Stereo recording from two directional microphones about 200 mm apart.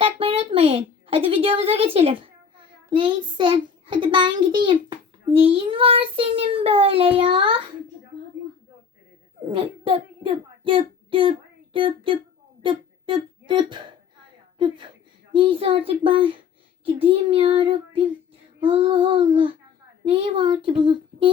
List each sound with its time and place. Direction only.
0.0 s a woman's voice: 30° right (ahead or behind)
9.5 s a child's voice: 25° right (ahead or behind)
20.8 s a sound: 25° right (ahead or behind)